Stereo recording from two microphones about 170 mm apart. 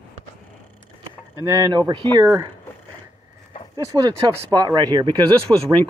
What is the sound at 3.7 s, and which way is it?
Speech, 20° right (ahead or behind).